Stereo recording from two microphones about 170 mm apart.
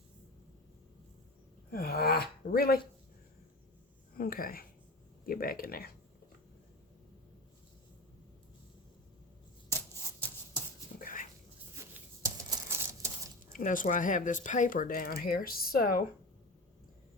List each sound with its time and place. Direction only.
1.7 s speech: 60° left (ahead or behind)
4.2 s speech: 60° left (ahead or behind)
10.2 s a sound: 10° left (ahead or behind)
11.0 s dog: 55° left (ahead or behind)
11.8 s a sound: 15° right (ahead or behind)
13.5 s speech: 50° left (ahead or behind)